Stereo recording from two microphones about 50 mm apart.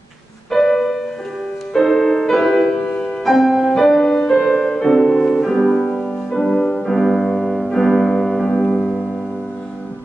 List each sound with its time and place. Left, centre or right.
0.5 s music: centre
2.8 s music: left
3.3 s music: centre
4.4 s music: centre
6.9 s music: centre